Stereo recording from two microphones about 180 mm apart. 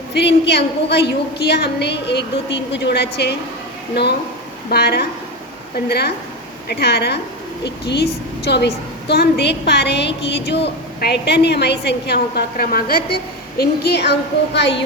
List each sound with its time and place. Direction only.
0.1 s a woman's voice: 70° left (ahead or behind)
4.7 s a woman's voice: 60° left (ahead or behind)